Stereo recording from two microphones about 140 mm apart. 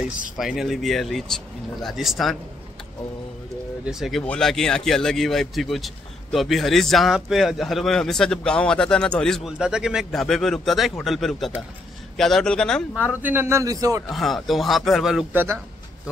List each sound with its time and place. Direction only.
0.4 s a man's voice: centre (ahead or behind)
3.8 s a man's voice: 5° right (ahead or behind)
13.1 s a man's voice: 15° right (ahead or behind)
14.0 s a man's voice: centre (ahead or behind)
15.3 s a man's voice: 20° right (ahead or behind)